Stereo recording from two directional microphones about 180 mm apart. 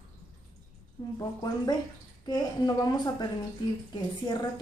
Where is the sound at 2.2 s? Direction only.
25° left (ahead or behind).